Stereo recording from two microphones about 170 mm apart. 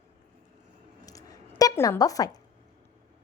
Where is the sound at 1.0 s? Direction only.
20° left (ahead or behind).